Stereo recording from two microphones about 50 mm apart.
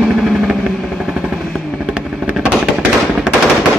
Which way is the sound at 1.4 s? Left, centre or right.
Centre.